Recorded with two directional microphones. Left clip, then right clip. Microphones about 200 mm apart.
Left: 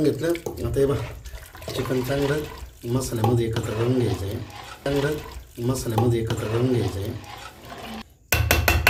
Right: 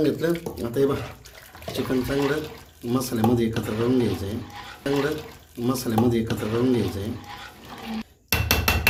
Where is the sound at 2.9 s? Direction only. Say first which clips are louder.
Right 1 dB; 15° right (ahead or behind).